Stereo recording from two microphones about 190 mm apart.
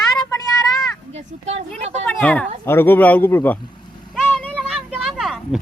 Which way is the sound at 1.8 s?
35° right (ahead or behind).